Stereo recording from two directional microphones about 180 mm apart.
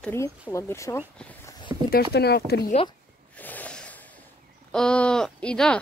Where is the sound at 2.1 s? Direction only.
65° left (ahead or behind).